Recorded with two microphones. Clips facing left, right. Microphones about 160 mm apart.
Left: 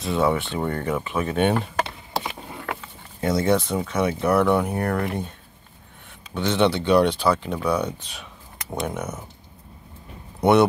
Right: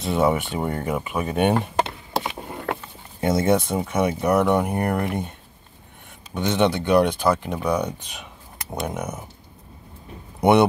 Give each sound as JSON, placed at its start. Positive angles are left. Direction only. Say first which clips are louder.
{"t": 0.0, "sound": "speech", "louder": "right 1 dB", "side_deg": -20}
{"t": 1.5, "sound": "a sound", "louder": "right 2 dB", "side_deg": -20}
{"t": 3.2, "sound": "speech", "louder": "right 1 dB", "side_deg": -25}
{"t": 6.3, "sound": "speech", "louder": "even", "side_deg": -15}
{"t": 10.4, "sound": "speech", "louder": "even", "side_deg": -20}